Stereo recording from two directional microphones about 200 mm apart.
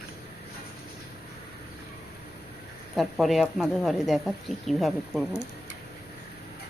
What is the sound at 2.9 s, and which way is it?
Speech, centre (ahead or behind).